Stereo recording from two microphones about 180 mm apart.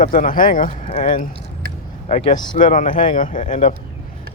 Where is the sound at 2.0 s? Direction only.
40° left (ahead or behind).